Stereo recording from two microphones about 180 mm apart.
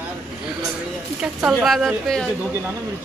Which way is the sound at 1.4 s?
Centre (ahead or behind).